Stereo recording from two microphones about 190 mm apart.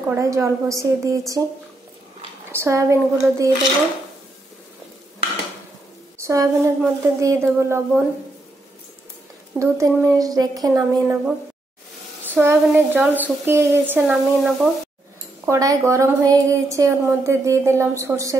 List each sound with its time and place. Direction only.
0.1 s a woman's voice: 15° right (ahead or behind)
2.5 s a woman's voice: 15° right (ahead or behind)
6.1 s a woman's voice: 15° right (ahead or behind)
9.6 s a woman's voice: 15° right (ahead or behind)
12.4 s a woman's voice: 10° right (ahead or behind)
15.4 s a woman's voice: 15° right (ahead or behind)